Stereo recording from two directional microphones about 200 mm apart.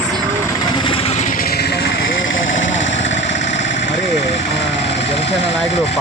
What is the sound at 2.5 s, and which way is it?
Vehicle, 70° left (ahead or behind).